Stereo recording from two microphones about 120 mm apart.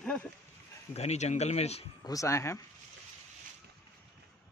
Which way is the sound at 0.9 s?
65° left (ahead or behind).